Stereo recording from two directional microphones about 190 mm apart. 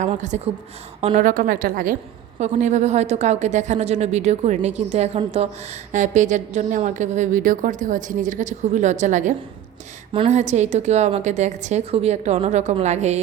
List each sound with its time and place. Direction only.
0.0 s a woman's voice: 40° right (ahead or behind)